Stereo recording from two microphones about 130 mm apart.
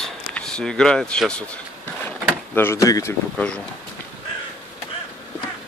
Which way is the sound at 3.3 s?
5° left (ahead or behind).